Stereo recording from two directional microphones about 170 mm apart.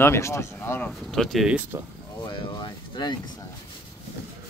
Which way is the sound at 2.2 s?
30° left (ahead or behind).